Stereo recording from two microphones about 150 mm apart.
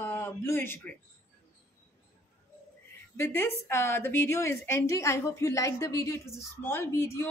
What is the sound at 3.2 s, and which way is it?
A woman's voice, 15° left (ahead or behind).